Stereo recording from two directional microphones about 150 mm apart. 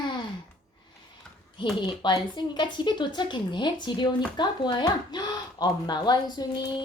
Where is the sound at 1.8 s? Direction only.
30° left (ahead or behind).